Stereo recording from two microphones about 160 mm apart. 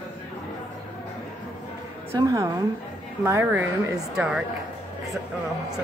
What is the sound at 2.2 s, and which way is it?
A woman's voice, 20° right (ahead or behind).